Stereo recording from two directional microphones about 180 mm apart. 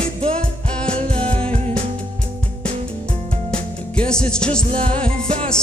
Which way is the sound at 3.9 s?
5° left (ahead or behind).